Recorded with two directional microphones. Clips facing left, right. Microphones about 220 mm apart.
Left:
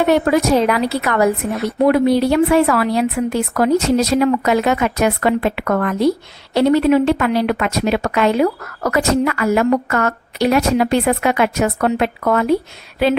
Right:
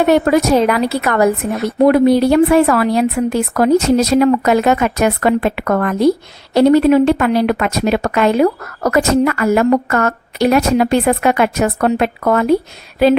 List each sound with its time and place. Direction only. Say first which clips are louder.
0.3 s a woman's voice: right 2 dB; 45° right (ahead or behind)